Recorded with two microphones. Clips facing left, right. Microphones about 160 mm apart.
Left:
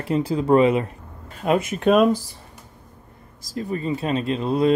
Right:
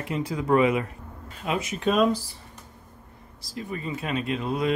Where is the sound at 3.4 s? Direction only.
40° left (ahead or behind).